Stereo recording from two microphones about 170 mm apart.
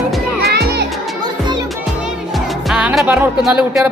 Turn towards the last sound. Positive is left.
turn(degrees=-5)  # may be behind; listen again after turning